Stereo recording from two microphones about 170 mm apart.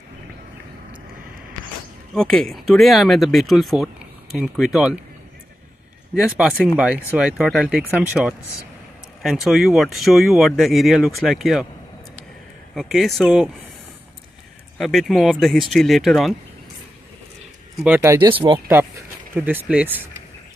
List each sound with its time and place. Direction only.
2.1 s speech: 5° left (ahead or behind)
6.1 s speech: 5° right (ahead or behind)
12.7 s speech: centre (ahead or behind)
14.8 s speech: centre (ahead or behind)
17.7 s speech: 10° right (ahead or behind)
18.2 s speech: 30° right (ahead or behind)
19.3 s speech: 10° right (ahead or behind)